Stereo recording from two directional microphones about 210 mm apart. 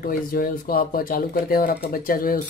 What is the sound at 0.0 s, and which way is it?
Speech, 45° left (ahead or behind).